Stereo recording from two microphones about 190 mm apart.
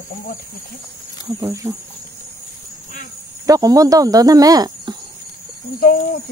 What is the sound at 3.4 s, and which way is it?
Speech, 20° right (ahead or behind).